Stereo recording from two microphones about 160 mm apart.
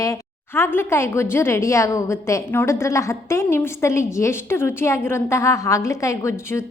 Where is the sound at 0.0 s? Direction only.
15° left (ahead or behind).